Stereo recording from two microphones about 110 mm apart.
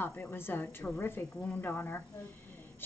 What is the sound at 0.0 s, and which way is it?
A woman's voice, 20° left (ahead or behind).